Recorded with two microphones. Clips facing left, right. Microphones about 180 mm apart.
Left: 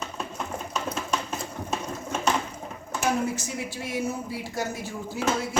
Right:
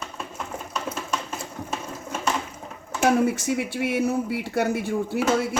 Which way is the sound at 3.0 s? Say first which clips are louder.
Right 6 dB; 65° right (ahead or behind).